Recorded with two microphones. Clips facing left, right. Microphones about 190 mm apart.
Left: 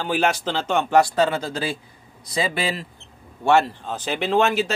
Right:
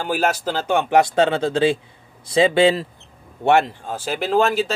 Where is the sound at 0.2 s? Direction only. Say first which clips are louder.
Right 1 dB; centre (ahead or behind).